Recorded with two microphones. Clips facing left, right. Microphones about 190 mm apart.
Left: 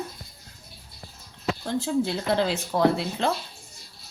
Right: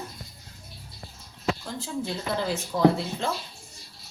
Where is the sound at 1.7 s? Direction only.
75° left (ahead or behind).